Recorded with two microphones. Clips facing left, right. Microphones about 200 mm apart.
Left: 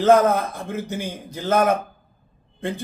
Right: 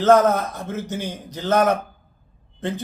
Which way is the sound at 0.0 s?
15° left (ahead or behind).